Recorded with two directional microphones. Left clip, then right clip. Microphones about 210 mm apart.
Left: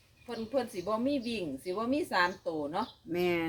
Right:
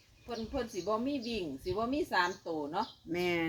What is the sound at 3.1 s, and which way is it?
Speech, centre (ahead or behind).